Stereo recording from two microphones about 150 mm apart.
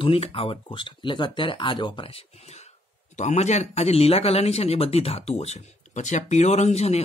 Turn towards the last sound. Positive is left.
turn(degrees=45)  # may be behind; listen again after turning